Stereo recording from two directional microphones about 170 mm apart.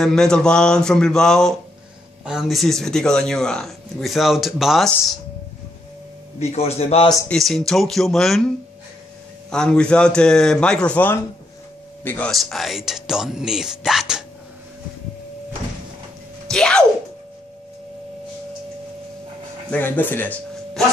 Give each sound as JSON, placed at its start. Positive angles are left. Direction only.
{"t": 0.0, "sound": "speech", "side_deg": 5}
{"t": 6.4, "sound": "a man's voice", "side_deg": 35}
{"t": 7.2, "sound": "speech", "side_deg": 0}
{"t": 9.5, "sound": "speech", "side_deg": 5}
{"t": 12.3, "sound": "speech", "side_deg": 0}
{"t": 16.4, "sound": "speech", "side_deg": 5}
{"t": 19.7, "sound": "speech", "side_deg": 10}